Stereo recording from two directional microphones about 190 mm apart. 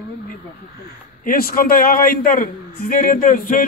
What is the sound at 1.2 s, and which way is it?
A man's voice, 50° left (ahead or behind).